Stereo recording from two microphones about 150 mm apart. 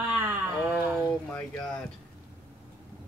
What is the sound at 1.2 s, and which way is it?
Speech, 5° left (ahead or behind).